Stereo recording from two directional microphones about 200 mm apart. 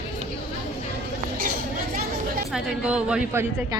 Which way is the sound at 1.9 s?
45° right (ahead or behind).